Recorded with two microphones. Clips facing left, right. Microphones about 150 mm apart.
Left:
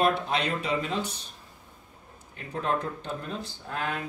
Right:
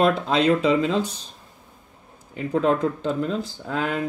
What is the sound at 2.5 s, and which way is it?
Speech, 90° right.